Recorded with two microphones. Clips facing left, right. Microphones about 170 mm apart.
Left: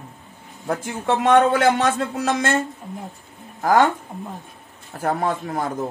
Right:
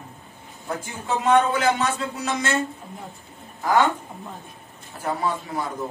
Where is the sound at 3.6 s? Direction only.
45° left (ahead or behind).